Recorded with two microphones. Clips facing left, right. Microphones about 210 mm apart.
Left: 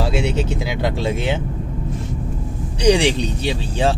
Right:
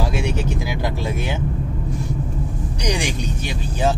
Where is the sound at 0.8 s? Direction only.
25° left (ahead or behind).